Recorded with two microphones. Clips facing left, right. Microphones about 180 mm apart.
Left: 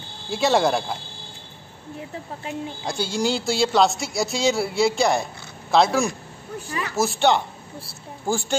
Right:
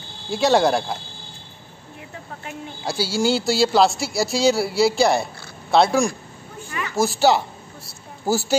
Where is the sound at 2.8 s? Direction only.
5° right (ahead or behind).